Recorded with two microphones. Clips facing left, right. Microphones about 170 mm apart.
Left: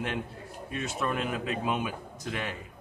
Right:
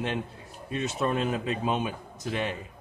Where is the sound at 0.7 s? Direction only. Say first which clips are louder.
Right 4 dB; 25° right (ahead or behind).